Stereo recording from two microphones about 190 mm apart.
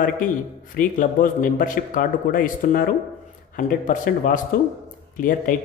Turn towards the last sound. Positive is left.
turn(degrees=45)  # may be behind; listen again after turning